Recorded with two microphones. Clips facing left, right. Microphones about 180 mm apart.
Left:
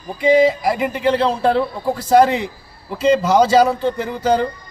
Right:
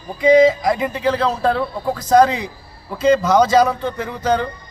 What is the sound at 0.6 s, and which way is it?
Speech, 5° left (ahead or behind).